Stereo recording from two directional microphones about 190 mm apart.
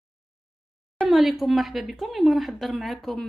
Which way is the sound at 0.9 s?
Centre (ahead or behind).